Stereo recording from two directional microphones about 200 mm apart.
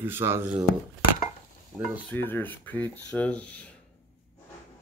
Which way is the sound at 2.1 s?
10° left (ahead or behind).